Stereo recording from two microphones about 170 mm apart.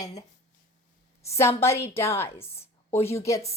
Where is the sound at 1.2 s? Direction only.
15° left (ahead or behind).